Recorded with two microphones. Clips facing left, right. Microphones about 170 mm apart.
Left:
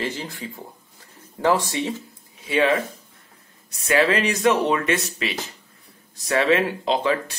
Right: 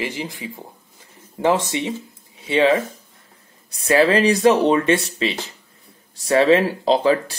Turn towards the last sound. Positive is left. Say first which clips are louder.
# right 5 dB
turn(degrees=-35)  # may be behind; listen again after turning